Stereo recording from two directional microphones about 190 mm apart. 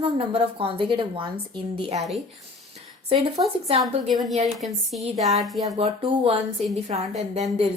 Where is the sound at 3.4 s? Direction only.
25° right (ahead or behind).